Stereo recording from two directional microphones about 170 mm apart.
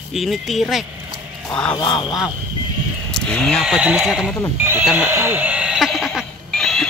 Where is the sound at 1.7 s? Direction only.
25° left (ahead or behind).